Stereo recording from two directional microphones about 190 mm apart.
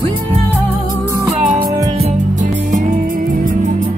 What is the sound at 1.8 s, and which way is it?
Music, 35° right (ahead or behind).